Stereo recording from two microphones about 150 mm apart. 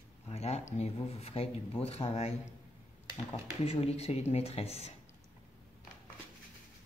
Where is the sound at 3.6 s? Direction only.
40° left (ahead or behind).